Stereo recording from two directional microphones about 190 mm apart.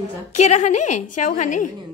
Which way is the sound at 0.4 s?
35° left (ahead or behind).